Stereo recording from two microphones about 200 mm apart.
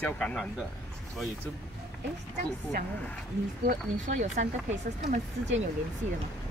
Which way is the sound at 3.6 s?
40° right (ahead or behind).